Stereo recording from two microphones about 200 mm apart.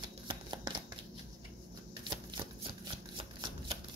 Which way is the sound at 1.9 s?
20° right (ahead or behind).